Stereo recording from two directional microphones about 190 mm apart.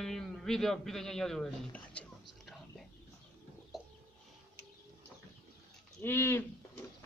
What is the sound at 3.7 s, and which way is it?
Chicken, centre (ahead or behind).